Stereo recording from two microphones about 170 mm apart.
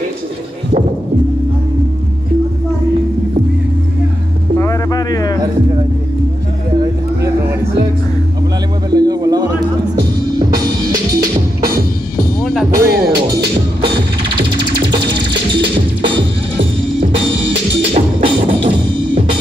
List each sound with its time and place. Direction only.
4.6 s a sound: 20° left (ahead or behind)
6.8 s music: 20° right (ahead or behind)
8.9 s music: 20° right (ahead or behind)
12.7 s music: 65° right (ahead or behind)
17.0 s music: 30° right (ahead or behind)